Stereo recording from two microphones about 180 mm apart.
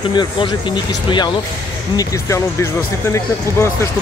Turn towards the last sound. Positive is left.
turn(degrees=15)  # may be behind; listen again after turning